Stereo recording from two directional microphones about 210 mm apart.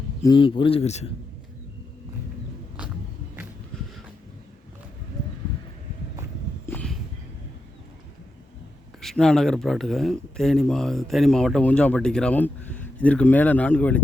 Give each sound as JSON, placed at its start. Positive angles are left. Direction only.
{"t": 0.3, "sound": "speech", "side_deg": 25}
{"t": 6.7, "sound": "a sound", "side_deg": 5}
{"t": 9.0, "sound": "speech", "side_deg": 0}